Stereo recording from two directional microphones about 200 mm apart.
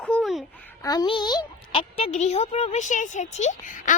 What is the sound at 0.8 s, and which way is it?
A woman's voice, 20° left (ahead or behind).